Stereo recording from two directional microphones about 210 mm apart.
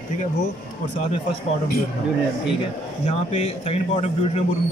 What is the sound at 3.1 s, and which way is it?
Speech, 30° left (ahead or behind).